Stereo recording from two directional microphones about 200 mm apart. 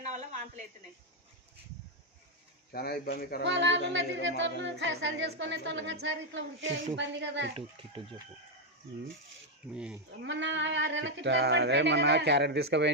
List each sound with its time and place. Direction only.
0.0 s a sound: 35° right (ahead or behind)
2.7 s speech: 50° left (ahead or behind)
3.4 s yodeling: 65° right (ahead or behind)
7.5 s speech: 25° right (ahead or behind)
9.7 s livestock: 5° right (ahead or behind)
10.2 s yodeling: 65° right (ahead or behind)